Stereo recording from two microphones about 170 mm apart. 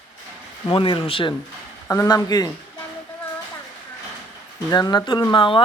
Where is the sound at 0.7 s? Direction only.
30° left (ahead or behind).